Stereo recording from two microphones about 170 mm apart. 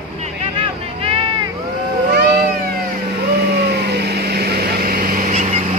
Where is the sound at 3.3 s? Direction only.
70° right (ahead or behind); by 5.4 s 55° right (ahead or behind).